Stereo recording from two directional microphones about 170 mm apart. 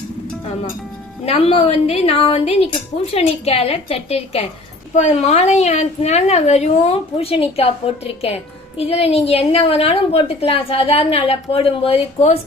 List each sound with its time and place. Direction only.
1.2 s a woman's voice: 35° left (ahead or behind)